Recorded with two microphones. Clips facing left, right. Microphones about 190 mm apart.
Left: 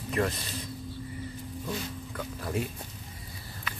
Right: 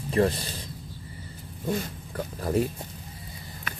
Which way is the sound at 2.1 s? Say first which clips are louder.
Right 7 dB; 40° right (ahead or behind).